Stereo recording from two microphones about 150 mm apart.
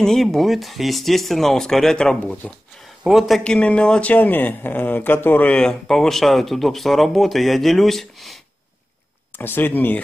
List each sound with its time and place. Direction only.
0.0 s speech: centre (ahead or behind)
9.4 s speech: 15° left (ahead or behind)